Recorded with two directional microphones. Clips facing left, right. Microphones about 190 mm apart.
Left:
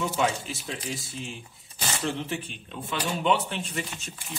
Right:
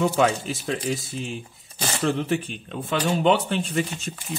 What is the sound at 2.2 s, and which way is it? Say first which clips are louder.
Speech: right 8 dB; 60° right (ahead or behind).